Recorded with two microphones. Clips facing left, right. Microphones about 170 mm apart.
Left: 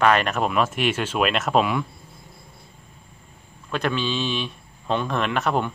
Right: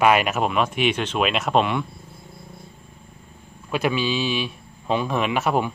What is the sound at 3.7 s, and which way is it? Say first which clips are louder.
Speech: right 2 dB; 10° right (ahead or behind).